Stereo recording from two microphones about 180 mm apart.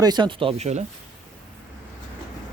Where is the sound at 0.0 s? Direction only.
25° right (ahead or behind).